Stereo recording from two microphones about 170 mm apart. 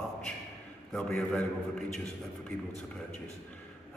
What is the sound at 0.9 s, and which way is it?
Speech, 10° left (ahead or behind).